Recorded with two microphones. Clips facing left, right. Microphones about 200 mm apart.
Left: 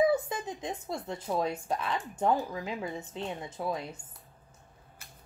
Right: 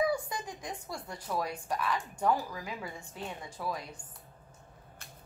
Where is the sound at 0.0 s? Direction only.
25° left (ahead or behind).